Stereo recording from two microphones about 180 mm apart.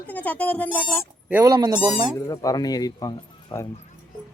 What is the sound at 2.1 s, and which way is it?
Speech, 20° left (ahead or behind).